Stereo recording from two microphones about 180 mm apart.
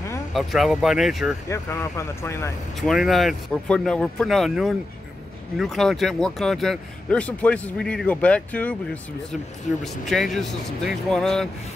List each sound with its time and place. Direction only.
0.3 s speech: centre (ahead or behind)
1.5 s speech: 15° left (ahead or behind)
2.8 s speech: centre (ahead or behind)
9.7 s speech: 45° left (ahead or behind)
10.0 s speech: centre (ahead or behind)